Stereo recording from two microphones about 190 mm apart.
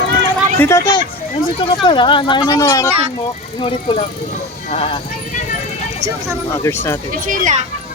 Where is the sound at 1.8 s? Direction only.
25° left (ahead or behind).